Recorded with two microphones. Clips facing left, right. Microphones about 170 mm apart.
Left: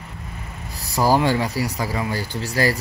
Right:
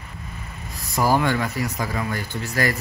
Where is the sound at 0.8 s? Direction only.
35° left (ahead or behind).